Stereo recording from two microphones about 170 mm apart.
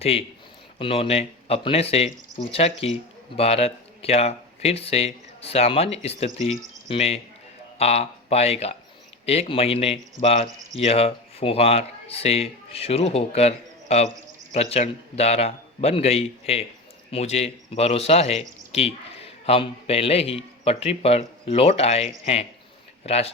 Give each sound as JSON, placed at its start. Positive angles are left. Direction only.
{"t": 0.0, "sound": "speech", "side_deg": 35}